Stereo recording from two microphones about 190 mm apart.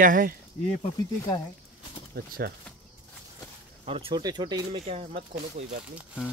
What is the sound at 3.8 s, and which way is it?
Speech, 30° right (ahead or behind).